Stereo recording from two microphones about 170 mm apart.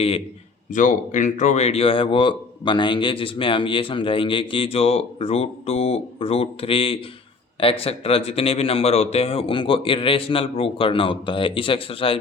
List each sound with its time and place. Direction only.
0.7 s speech: 50° left (ahead or behind); by 12.1 s 30° left (ahead or behind)